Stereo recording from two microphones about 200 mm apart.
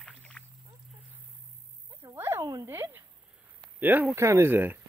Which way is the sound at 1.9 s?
15° right (ahead or behind).